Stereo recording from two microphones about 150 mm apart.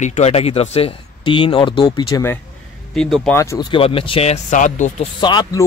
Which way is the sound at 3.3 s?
20° left (ahead or behind).